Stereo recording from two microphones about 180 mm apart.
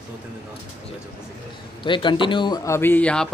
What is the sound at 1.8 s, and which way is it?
A man's voice, 25° left (ahead or behind).